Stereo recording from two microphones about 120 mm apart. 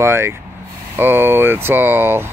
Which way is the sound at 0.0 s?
20° right (ahead or behind).